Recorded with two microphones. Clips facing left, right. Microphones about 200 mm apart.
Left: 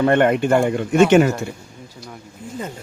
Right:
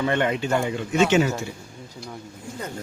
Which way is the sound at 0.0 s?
55° left (ahead or behind).